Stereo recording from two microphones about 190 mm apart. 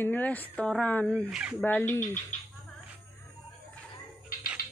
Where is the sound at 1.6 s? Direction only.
10° left (ahead or behind).